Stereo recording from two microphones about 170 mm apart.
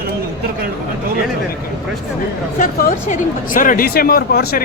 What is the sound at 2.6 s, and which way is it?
Speech, 50° left (ahead or behind).